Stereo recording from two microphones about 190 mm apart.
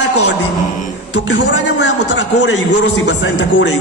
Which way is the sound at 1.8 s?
70° left (ahead or behind).